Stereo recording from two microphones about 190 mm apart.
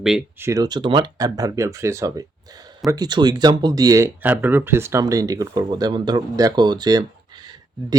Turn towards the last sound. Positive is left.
turn(degrees=-20)  # may be behind; listen again after turning